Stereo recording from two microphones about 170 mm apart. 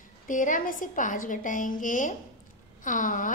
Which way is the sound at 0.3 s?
50° left (ahead or behind).